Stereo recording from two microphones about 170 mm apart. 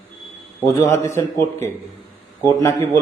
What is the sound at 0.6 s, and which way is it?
A man's voice, 15° left (ahead or behind).